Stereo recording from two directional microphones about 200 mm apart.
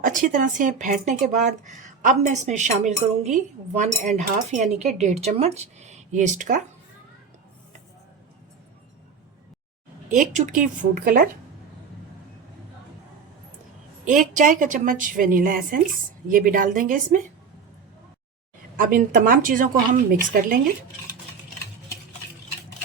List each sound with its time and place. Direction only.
0.0 s speech: 40° right (ahead or behind)
10.1 s speech: 40° right (ahead or behind)
14.0 s speech: 40° right (ahead or behind)
18.8 s speech: 45° right (ahead or behind)